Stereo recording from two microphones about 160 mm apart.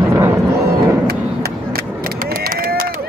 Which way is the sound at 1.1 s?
75° right (ahead or behind).